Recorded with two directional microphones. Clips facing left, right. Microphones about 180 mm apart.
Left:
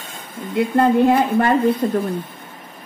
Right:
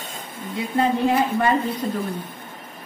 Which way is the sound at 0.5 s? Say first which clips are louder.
Left 6 dB; 55° left (ahead or behind).